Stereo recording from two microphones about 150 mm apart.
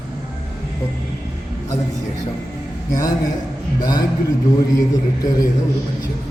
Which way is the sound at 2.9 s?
25° left (ahead or behind).